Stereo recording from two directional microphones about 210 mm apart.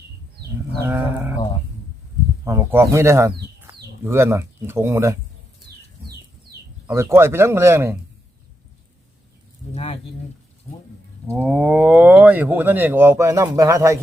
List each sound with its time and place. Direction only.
0.8 s goat: 10° right (ahead or behind)
2.4 s speech: 15° right (ahead or behind)
3.7 s bird: 10° right (ahead or behind)
4.0 s speech: 10° right (ahead or behind)
5.7 s a sound: 50° right (ahead or behind)
6.8 s speech: 10° right (ahead or behind)
9.7 s speech: 30° left (ahead or behind)
11.3 s speech: 5° right (ahead or behind)